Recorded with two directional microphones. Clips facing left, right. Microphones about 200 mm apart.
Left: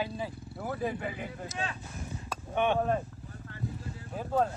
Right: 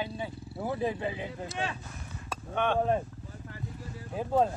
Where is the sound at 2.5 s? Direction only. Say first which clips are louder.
Left 1 dB; 15° left (ahead or behind).